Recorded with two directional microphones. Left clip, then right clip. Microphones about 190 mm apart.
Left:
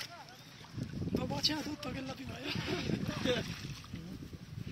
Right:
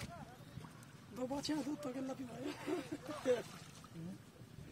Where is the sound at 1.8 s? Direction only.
25° right (ahead or behind).